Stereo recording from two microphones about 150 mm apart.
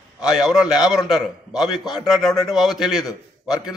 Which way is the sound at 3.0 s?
25° left (ahead or behind).